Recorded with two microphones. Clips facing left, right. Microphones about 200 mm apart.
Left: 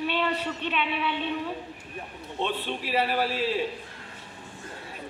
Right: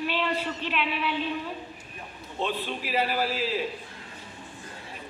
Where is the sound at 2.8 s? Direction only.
30° left (ahead or behind).